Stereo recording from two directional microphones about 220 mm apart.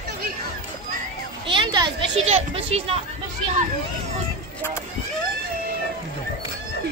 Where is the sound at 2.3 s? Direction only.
30° right (ahead or behind).